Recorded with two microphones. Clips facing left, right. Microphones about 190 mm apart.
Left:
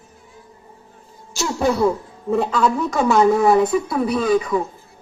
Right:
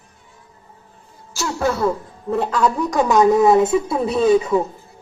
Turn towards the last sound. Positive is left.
turn(degrees=-25)  # may be behind; listen again after turning